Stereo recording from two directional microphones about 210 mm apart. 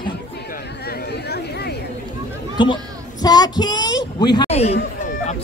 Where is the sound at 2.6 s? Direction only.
20° left (ahead or behind).